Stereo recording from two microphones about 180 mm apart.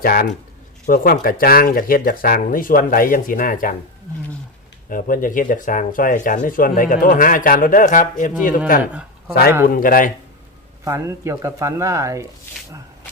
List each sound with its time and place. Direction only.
0.0 s speech: 50° left (ahead or behind)
4.9 s speech: 50° left (ahead or behind)
8.8 s speech: 5° right (ahead or behind)
9.6 s speech: 50° left (ahead or behind)
10.8 s speech: 15° right (ahead or behind)